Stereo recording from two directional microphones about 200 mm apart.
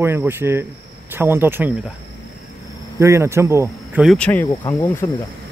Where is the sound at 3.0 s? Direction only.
15° right (ahead or behind).